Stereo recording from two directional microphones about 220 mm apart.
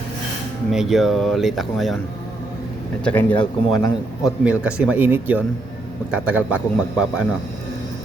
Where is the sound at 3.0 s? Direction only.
5° left (ahead or behind).